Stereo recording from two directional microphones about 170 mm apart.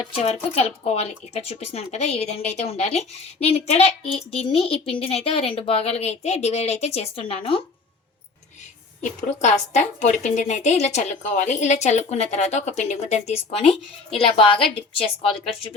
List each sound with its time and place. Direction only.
0.0 s speech: 40° left (ahead or behind)
9.4 s a woman's voice: 45° left (ahead or behind)